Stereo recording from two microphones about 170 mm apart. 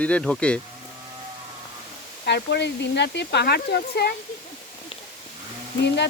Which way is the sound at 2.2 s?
85° left.